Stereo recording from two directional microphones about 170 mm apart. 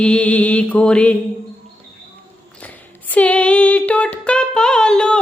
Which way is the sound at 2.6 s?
10° left (ahead or behind).